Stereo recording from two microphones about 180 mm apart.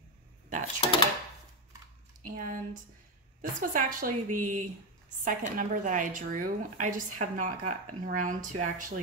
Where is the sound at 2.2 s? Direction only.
50° right (ahead or behind).